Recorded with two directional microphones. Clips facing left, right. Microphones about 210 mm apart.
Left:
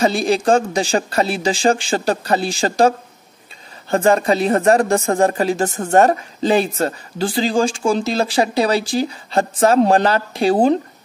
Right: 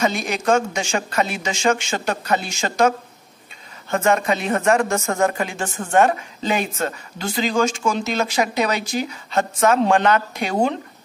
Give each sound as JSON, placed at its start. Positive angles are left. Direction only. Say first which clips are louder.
{"t": 0.0, "sound": "speech", "louder": "left 5 dB", "side_deg": 30}
{"t": 3.9, "sound": "speech", "louder": "left 4 dB", "side_deg": 35}